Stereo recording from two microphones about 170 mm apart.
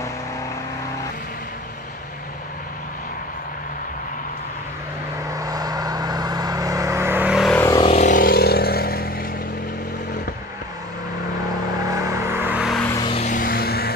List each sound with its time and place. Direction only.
5.3 s vehicle: 20° right (ahead or behind); by 7.5 s 5° right (ahead or behind)
7.7 s vehicle: 30° left (ahead or behind)
8.0 s vehicle: 55° left (ahead or behind)
11.9 s vehicle: 20° right (ahead or behind)
13.0 s a sound: 35° left (ahead or behind)
13.3 s vehicle: 55° left (ahead or behind)